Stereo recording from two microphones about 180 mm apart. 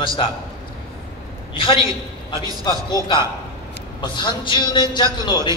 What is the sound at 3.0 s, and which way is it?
Speech, 20° right (ahead or behind).